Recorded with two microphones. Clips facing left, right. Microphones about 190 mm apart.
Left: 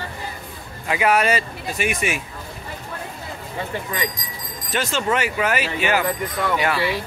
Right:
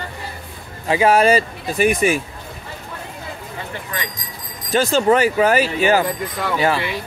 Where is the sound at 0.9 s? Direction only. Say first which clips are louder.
Right 5 dB; 30° right (ahead or behind).